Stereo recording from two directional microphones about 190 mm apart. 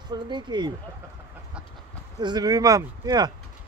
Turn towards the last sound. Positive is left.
turn(degrees=-20)  # may be behind; listen again after turning